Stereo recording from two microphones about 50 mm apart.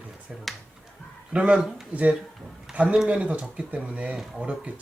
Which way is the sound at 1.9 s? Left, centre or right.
Right.